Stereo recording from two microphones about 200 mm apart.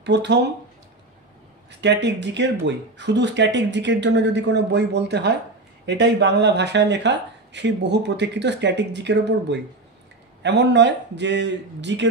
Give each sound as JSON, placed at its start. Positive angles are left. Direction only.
{"t": 0.0, "sound": "speech", "side_deg": -60}
{"t": 1.7, "sound": "speech", "side_deg": -60}